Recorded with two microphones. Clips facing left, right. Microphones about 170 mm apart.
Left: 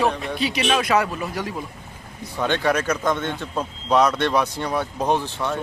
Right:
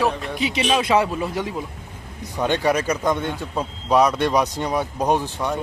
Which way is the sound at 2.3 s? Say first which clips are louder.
Right 1 dB; 15° right (ahead or behind).